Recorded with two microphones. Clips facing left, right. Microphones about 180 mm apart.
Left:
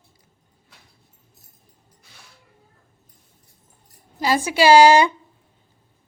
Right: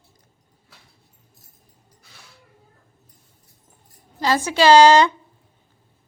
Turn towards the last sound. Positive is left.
turn(degrees=10)  # may be behind; listen again after turning